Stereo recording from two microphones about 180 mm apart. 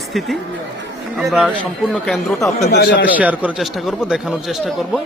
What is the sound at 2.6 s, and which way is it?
Speech, 65° left (ahead or behind).